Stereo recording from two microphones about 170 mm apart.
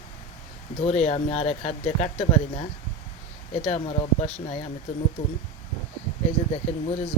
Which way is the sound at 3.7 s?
40° left (ahead or behind).